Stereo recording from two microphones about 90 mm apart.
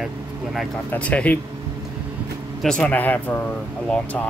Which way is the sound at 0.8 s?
15° left (ahead or behind).